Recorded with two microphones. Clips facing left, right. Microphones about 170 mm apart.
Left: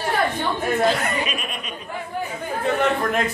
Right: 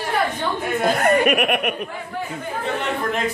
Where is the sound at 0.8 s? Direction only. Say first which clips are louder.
Right 8 dB; 50° right (ahead or behind); by 1.7 s 70° right (ahead or behind).